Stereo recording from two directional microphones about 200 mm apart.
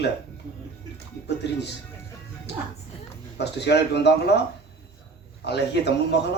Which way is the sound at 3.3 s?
60° left (ahead or behind).